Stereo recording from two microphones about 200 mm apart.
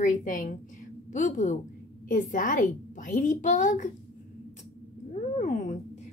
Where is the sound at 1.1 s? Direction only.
40° left (ahead or behind).